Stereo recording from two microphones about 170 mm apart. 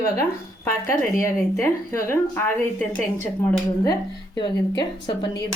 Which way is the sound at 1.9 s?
15° left (ahead or behind).